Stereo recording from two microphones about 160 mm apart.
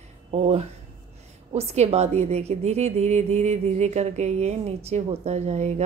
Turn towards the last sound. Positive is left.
turn(degrees=-45)  # may be behind; listen again after turning